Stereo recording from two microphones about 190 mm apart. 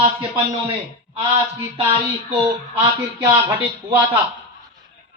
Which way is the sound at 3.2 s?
20° right (ahead or behind).